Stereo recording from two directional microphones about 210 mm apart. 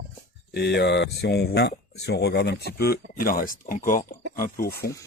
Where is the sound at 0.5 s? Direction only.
50° left (ahead or behind).